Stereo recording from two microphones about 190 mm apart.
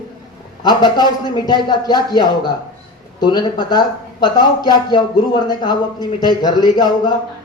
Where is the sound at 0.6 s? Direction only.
20° left (ahead or behind).